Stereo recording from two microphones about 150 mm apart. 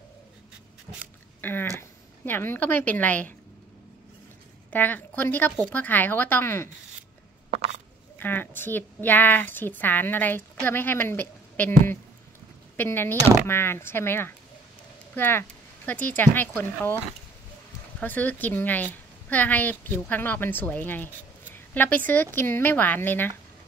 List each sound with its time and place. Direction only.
1.4 s a sound: 15° left (ahead or behind)
1.8 s speech: 15° left (ahead or behind)
4.6 s a woman's voice: 10° left (ahead or behind)
8.2 s a woman's voice: 15° left (ahead or behind)
12.7 s a woman's voice: 15° left (ahead or behind)
18.0 s a woman's voice: 10° left (ahead or behind)